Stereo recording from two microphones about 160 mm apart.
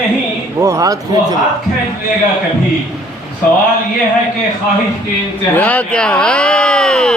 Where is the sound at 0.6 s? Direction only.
20° right (ahead or behind).